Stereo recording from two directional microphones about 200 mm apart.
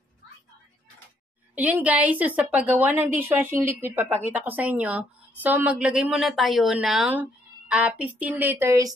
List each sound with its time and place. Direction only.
1.5 s a woman's voice: 5° right (ahead or behind)